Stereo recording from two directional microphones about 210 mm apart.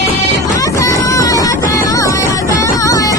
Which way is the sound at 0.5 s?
15° left (ahead or behind).